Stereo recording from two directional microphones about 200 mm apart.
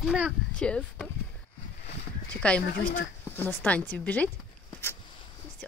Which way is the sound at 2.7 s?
45° left (ahead or behind).